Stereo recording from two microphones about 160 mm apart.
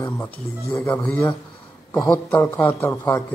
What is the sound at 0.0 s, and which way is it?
A man's voice, 15° left (ahead or behind).